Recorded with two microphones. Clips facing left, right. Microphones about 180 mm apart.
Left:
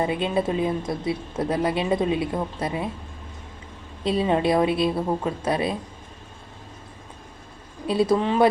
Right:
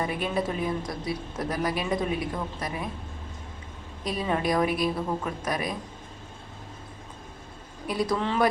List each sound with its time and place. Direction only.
0.0 s a woman's voice: 25° left (ahead or behind)
4.0 s a woman's voice: 25° left (ahead or behind)
7.9 s a woman's voice: 25° left (ahead or behind)